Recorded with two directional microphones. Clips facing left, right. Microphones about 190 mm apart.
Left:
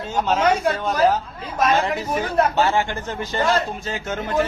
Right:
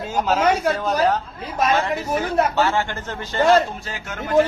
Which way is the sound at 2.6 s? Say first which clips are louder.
Left 1 dB; 15° left (ahead or behind).